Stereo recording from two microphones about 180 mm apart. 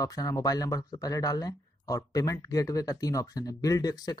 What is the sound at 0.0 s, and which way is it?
Speech, 20° left (ahead or behind).